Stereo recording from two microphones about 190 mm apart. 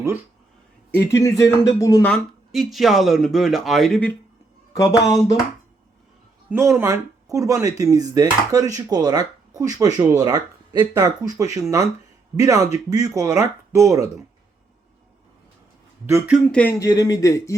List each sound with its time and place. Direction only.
0.9 s speech: 15° left (ahead or behind)
4.7 s speech: 15° left (ahead or behind)
6.5 s speech: 15° right (ahead or behind)
16.0 s speech: 15° right (ahead or behind)
16.3 s speech: 5° left (ahead or behind)
16.7 s speech: 20° left (ahead or behind)